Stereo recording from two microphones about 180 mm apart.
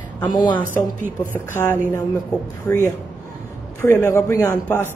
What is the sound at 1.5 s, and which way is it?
Speech, 10° left (ahead or behind).